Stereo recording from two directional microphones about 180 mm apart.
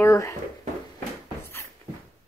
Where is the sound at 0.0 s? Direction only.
15° left (ahead or behind).